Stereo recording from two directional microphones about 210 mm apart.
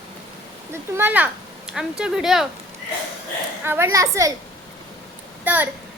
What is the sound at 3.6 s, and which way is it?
Speech, 10° right (ahead or behind).